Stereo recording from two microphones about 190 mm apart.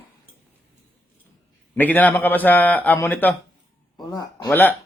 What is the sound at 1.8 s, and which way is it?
A man's voice, 10° left (ahead or behind).